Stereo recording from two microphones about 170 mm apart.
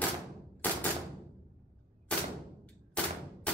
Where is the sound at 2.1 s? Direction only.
10° left (ahead or behind).